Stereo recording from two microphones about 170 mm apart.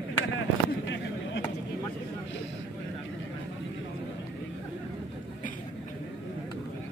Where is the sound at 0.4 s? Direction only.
90° left.